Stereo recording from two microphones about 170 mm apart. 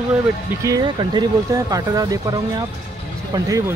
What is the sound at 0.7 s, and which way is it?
Speech, 20° right (ahead or behind).